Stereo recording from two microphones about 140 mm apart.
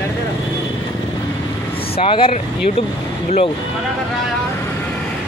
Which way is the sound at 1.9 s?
40° left (ahead or behind).